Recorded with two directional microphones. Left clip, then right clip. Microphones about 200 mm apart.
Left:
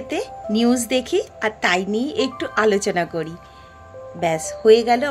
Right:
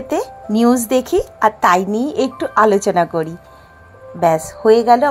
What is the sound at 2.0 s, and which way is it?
Speech, 10° right (ahead or behind).